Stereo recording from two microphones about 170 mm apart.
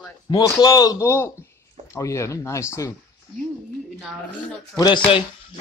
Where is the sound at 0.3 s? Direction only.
20° left (ahead or behind).